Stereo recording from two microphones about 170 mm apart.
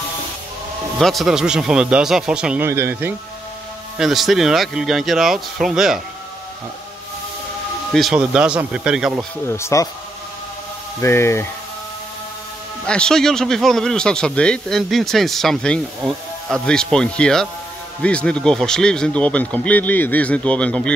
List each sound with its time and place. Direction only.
0.9 s a man's voice: centre (ahead or behind)
4.0 s a man's voice: centre (ahead or behind)
7.9 s a man's voice: centre (ahead or behind)
9.5 s speech: 15° left (ahead or behind)
11.0 s speech: 15° left (ahead or behind)
12.8 s a man's voice: 5° left (ahead or behind)